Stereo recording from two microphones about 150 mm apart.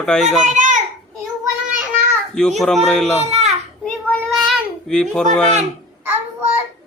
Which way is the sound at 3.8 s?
5° left (ahead or behind).